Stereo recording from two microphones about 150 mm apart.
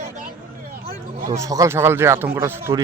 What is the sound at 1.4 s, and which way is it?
Speech, 20° right (ahead or behind).